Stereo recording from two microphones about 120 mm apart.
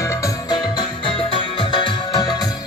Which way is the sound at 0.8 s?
40° left (ahead or behind).